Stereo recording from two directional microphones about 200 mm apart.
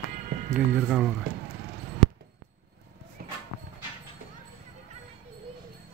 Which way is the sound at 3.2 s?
45° right (ahead or behind).